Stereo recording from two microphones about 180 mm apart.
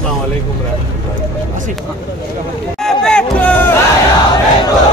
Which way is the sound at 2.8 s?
5° left (ahead or behind).